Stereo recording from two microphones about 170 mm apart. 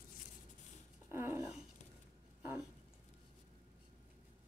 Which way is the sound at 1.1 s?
15° right (ahead or behind).